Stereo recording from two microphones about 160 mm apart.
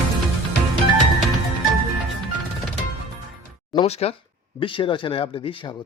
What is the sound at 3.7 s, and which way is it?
Speech, 40° left (ahead or behind).